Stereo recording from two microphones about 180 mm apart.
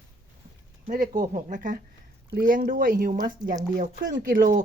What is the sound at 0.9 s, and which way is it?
Speech, 45° right (ahead or behind).